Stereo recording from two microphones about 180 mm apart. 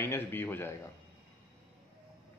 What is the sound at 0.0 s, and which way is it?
Speech, 10° left (ahead or behind).